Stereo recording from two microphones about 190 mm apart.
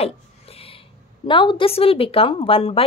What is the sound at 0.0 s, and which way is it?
A woman's voice, 30° left (ahead or behind).